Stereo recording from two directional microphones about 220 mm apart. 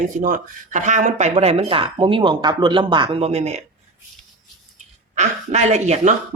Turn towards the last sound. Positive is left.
turn(degrees=-30)  # may be behind; listen again after turning